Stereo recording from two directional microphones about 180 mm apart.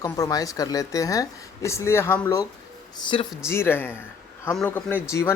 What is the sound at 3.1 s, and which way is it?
Speech, 30° left (ahead or behind).